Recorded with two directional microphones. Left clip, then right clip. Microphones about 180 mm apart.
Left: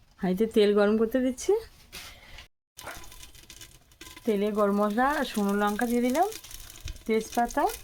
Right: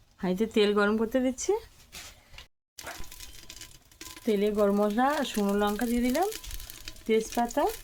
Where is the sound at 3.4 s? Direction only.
20° right (ahead or behind).